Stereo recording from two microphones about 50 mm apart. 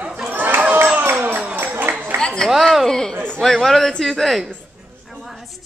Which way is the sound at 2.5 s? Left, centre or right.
Centre.